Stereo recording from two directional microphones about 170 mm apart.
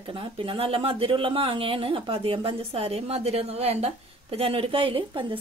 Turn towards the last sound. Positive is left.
turn(degrees=-30)  # may be behind; listen again after turning